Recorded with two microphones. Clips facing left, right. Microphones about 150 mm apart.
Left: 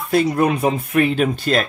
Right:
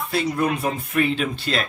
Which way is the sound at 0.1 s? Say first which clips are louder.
Left 6 dB; 50° left (ahead or behind).